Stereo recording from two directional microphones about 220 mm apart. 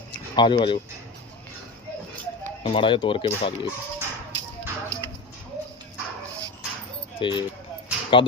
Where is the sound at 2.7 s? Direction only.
20° left (ahead or behind).